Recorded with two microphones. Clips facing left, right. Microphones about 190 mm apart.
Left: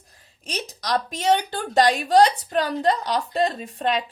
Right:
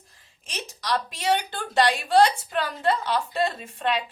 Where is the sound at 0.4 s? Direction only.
40° left (ahead or behind).